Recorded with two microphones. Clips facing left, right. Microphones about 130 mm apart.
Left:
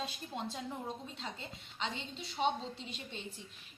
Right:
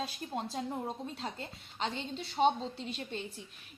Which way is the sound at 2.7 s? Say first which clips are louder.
Right 6 dB; centre (ahead or behind).